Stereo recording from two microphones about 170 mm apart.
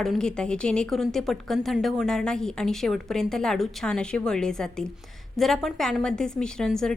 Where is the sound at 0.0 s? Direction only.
5° left (ahead or behind).